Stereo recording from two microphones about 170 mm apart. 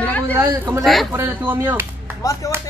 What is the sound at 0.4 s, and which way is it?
Speech, 15° right (ahead or behind).